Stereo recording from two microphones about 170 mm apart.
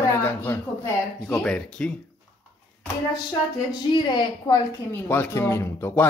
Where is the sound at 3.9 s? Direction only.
25° left (ahead or behind).